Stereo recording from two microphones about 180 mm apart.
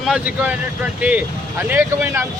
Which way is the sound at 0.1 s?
5° right (ahead or behind).